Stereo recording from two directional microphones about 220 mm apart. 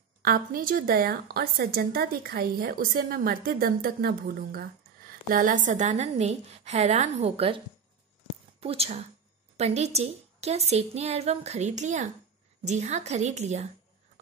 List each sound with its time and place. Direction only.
0.2 s a woman's voice: 40° right (ahead or behind)